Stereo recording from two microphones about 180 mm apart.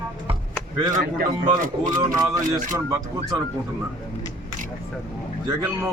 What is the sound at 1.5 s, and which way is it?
Speech, 45° right (ahead or behind).